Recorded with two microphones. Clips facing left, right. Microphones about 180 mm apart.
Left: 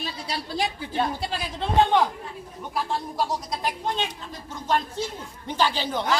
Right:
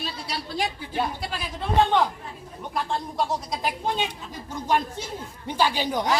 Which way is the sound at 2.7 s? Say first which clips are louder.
Even; centre (ahead or behind).